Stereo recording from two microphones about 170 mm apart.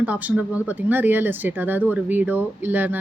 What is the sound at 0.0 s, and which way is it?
A woman's voice, 10° right (ahead or behind).